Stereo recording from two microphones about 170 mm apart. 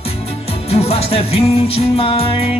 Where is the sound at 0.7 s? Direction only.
35° left (ahead or behind).